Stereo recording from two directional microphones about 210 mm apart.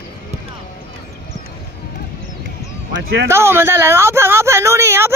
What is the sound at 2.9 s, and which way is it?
Speech, 60° right (ahead or behind).